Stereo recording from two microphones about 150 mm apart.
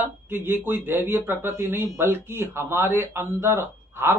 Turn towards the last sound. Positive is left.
turn(degrees=-15)  # may be behind; listen again after turning